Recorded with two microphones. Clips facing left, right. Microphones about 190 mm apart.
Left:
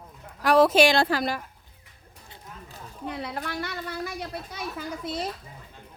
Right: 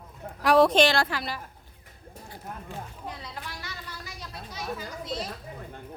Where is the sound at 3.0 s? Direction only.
60° left (ahead or behind).